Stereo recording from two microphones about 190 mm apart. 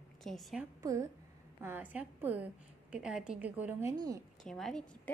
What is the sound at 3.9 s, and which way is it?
Speech, 20° right (ahead or behind).